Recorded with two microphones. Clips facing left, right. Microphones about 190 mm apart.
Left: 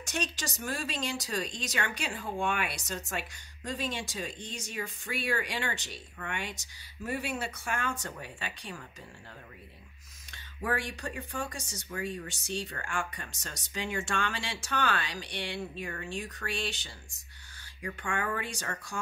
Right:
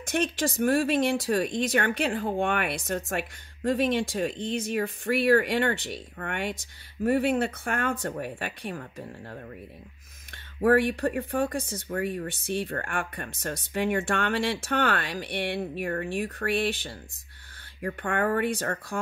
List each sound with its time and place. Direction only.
0.0 s speech: 55° right (ahead or behind)
10.6 s speech: 60° right (ahead or behind)